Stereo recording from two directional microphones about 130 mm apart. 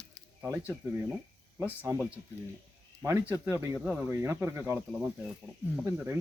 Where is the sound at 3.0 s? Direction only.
20° right (ahead or behind).